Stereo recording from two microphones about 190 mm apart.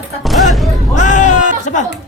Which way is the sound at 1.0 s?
40° left (ahead or behind).